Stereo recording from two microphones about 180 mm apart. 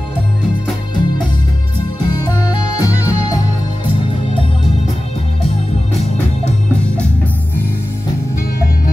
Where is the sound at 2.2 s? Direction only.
20° left (ahead or behind).